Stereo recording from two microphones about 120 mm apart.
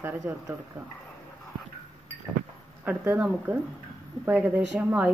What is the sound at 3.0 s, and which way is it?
A woman's voice, 15° right (ahead or behind).